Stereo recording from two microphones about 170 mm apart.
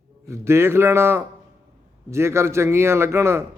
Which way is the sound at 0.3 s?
15° right (ahead or behind).